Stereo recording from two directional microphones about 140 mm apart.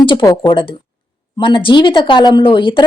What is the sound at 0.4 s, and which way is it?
Speech, 40° left (ahead or behind).